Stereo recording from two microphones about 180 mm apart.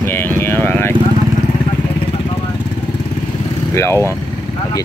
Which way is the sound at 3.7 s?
15° left (ahead or behind).